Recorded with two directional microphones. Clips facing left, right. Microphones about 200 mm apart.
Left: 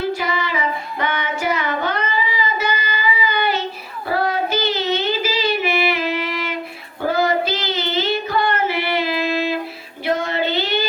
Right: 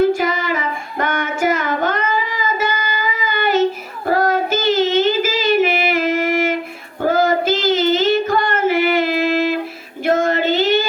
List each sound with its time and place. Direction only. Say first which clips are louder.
0.0 s female singing: right 6 dB; 50° right (ahead or behind)
4.0 s child singing: right 4 dB; 45° right (ahead or behind)